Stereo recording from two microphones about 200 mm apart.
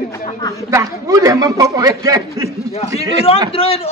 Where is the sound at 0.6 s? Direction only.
15° right (ahead or behind).